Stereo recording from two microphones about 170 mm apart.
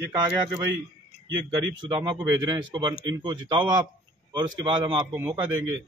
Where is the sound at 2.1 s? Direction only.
20° right (ahead or behind).